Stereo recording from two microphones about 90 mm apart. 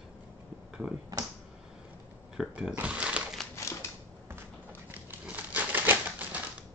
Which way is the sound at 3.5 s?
30° left (ahead or behind).